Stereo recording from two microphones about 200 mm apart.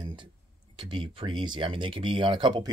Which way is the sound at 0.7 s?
25° right (ahead or behind).